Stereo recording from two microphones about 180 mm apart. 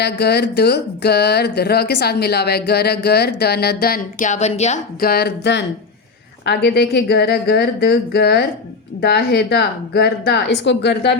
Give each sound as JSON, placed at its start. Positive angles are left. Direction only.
{"t": 0.0, "sound": "speech", "side_deg": 65}
{"t": 4.9, "sound": "speech", "side_deg": 60}